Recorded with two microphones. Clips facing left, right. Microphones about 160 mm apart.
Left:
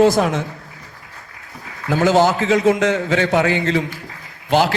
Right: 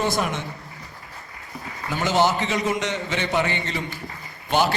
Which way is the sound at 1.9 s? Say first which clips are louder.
Left 6 dB; 90° left.